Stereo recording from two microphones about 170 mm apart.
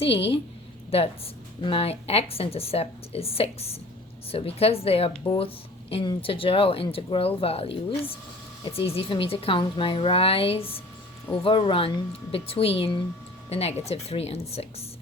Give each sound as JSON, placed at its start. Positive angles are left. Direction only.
{"t": 0.9, "sound": "speech", "side_deg": 35}